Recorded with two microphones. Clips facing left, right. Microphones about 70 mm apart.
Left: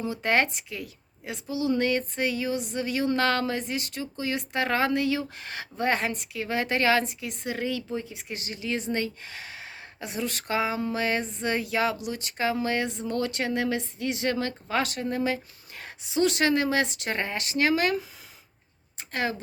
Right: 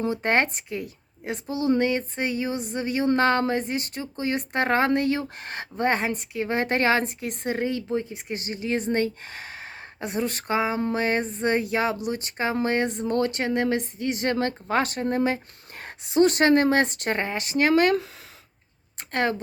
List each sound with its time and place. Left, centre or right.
0.1 s a woman's voice: right
1.8 s a woman's voice: right
17.2 s a woman's voice: right
18.9 s a woman's voice: right